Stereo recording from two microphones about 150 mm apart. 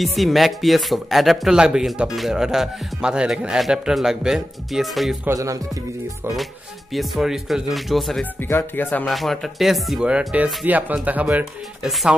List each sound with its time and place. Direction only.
0.0 s speech: centre (ahead or behind)
5.2 s music: 20° right (ahead or behind)
6.9 s speech: centre (ahead or behind)
8.4 s speech: 15° left (ahead or behind)
9.0 s speech: centre (ahead or behind)